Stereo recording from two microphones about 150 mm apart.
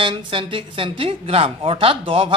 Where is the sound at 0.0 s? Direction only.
35° right (ahead or behind).